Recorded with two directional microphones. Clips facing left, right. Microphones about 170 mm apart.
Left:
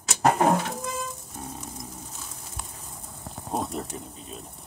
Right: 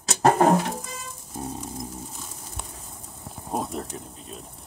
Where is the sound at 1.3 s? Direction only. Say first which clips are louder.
Right 7 dB; 35° right (ahead or behind).